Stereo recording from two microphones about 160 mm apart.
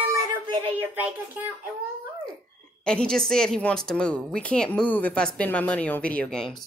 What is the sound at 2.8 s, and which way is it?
A woman's voice, 5° left (ahead or behind).